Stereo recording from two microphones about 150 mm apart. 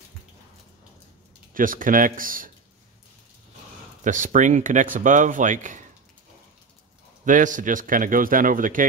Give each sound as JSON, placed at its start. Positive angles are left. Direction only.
{"t": 1.5, "sound": "speech", "side_deg": -65}
{"t": 4.0, "sound": "speech", "side_deg": -60}
{"t": 7.2, "sound": "speech", "side_deg": -60}